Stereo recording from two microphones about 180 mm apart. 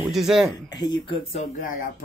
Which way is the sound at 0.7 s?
25° left (ahead or behind).